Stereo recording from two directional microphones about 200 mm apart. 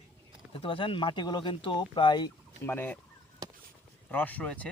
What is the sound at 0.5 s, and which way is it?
Speech, 25° left (ahead or behind).